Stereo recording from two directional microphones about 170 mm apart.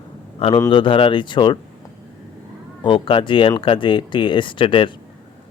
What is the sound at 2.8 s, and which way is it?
Speech, 30° left (ahead or behind).